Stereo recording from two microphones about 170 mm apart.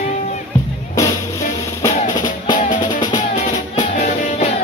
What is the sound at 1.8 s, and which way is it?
Music, 25° left (ahead or behind).